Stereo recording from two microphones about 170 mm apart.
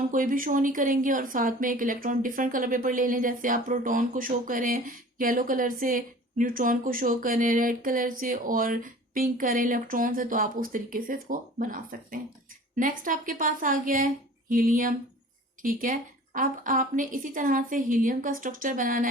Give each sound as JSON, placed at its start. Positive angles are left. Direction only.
{"t": 0.1, "sound": "speech", "side_deg": -50}